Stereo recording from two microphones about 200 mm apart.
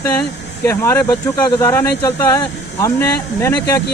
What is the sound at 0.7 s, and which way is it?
Speech, 15° left (ahead or behind).